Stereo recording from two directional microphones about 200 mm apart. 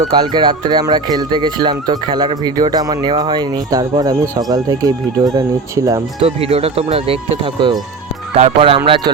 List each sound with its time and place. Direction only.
0.2 s speech: 20° right (ahead or behind)
6.2 s speech: 30° right (ahead or behind)